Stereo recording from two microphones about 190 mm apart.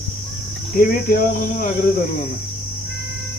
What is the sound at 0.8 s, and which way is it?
Speech, 50° left (ahead or behind).